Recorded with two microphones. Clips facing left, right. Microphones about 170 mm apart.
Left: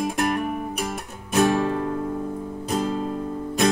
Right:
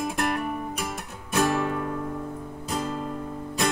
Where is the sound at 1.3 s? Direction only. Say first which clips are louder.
Left 4 dB; 25° left (ahead or behind).